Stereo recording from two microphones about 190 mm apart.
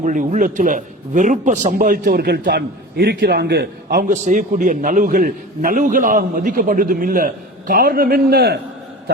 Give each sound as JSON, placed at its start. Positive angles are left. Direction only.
{"t": 0.0, "sound": "a man's voice", "side_deg": -40}